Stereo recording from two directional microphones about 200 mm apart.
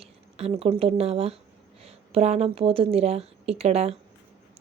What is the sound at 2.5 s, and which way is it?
A woman's voice, 25° right (ahead or behind).